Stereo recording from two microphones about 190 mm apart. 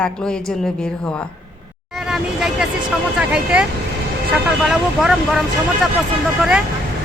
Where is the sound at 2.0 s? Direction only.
Centre (ahead or behind).